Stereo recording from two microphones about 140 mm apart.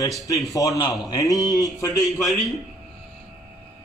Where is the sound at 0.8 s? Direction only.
30° left (ahead or behind).